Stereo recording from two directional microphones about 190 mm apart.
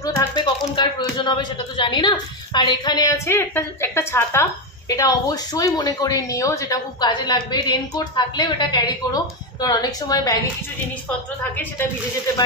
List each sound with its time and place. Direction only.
0.0 s a woman's voice: 20° left (ahead or behind)